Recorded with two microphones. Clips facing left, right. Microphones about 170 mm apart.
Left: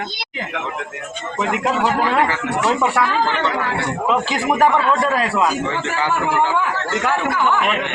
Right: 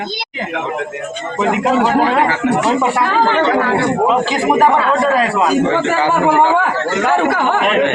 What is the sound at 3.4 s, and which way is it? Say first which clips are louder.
Speech: right 7 dB; 75° right (ahead or behind).